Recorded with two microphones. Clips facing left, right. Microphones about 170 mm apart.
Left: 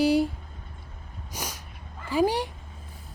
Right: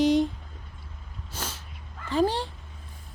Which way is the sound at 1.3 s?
15° left (ahead or behind).